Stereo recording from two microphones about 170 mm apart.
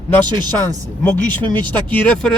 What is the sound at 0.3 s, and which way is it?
Speech, 25° right (ahead or behind).